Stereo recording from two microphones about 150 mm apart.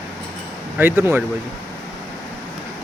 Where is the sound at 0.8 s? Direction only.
15° right (ahead or behind).